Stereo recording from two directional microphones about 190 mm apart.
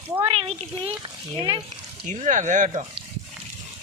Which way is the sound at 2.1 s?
40° right (ahead or behind).